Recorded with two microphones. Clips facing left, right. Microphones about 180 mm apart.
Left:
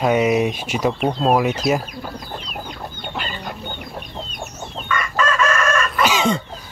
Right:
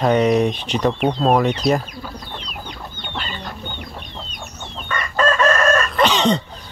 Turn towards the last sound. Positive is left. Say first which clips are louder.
# right 1 dB
turn(degrees=5)  # may be behind; listen again after turning